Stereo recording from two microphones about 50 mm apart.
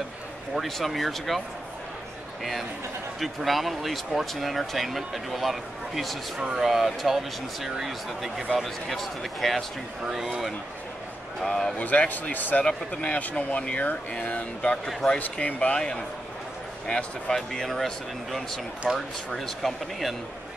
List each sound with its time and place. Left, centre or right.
0.6 s speech: centre
3.2 s speech: centre
10.0 s speech: centre
11.4 s speech: centre
11.8 s speech: left
16.8 s speech: centre